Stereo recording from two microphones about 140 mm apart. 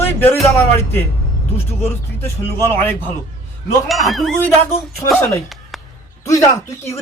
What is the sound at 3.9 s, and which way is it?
Speech, centre (ahead or behind).